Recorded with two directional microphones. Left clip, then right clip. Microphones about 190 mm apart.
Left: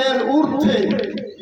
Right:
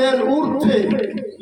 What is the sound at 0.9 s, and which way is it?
Speech, 40° right (ahead or behind).